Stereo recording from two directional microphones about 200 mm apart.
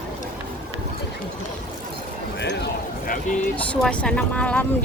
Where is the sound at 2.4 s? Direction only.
55° left (ahead or behind).